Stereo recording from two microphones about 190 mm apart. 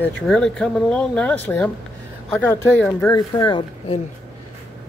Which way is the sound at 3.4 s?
25° left (ahead or behind).